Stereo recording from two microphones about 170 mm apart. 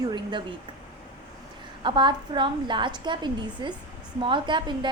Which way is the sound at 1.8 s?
30° right (ahead or behind).